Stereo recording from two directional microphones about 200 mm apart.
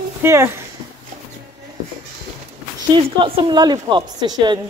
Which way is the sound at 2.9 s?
25° right (ahead or behind).